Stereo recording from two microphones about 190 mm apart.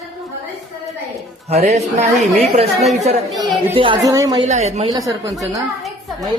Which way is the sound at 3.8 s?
20° right (ahead or behind).